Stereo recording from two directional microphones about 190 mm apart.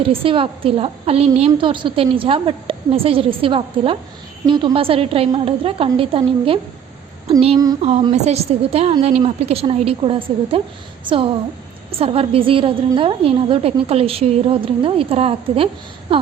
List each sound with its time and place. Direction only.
0.0 s a woman's voice: 30° right (ahead or behind)